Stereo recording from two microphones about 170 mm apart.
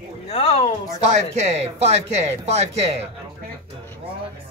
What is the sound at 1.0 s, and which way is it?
Speech, 40° right (ahead or behind).